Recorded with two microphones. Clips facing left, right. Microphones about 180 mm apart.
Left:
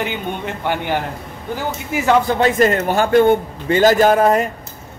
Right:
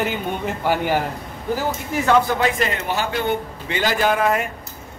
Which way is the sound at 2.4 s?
45° left (ahead or behind).